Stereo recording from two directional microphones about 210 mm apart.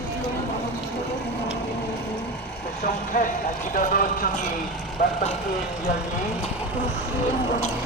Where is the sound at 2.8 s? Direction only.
40° left (ahead or behind).